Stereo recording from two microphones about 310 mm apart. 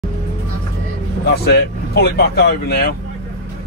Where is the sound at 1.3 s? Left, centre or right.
Left.